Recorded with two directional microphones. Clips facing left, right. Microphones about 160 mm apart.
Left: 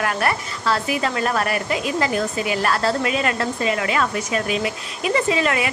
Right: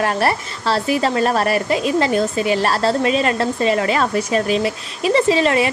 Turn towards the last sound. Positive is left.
turn(degrees=-30)  # may be behind; listen again after turning